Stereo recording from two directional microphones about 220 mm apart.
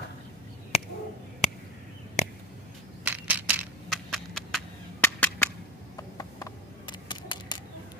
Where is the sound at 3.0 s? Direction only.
5° right (ahead or behind).